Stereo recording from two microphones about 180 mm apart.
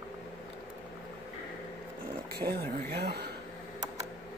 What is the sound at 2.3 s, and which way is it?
Speech, 60° right (ahead or behind).